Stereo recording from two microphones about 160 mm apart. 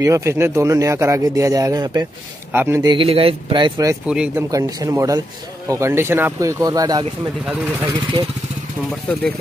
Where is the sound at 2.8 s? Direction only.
30° right (ahead or behind).